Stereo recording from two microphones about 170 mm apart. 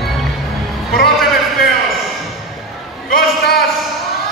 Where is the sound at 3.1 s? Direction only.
60° left (ahead or behind).